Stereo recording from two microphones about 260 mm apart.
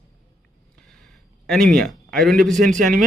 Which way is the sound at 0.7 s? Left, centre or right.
Centre.